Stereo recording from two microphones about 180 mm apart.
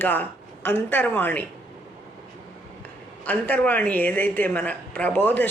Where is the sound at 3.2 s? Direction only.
10° left (ahead or behind).